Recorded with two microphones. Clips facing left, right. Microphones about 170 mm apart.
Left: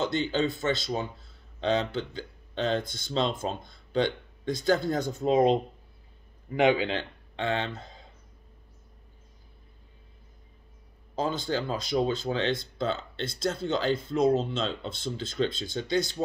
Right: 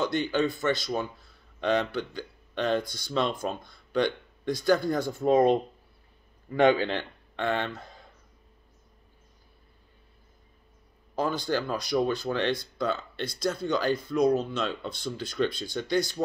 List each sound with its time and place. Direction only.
0.0 s speech: 25° left (ahead or behind)
6.7 s speech: 15° left (ahead or behind)
11.1 s speech: 20° left (ahead or behind)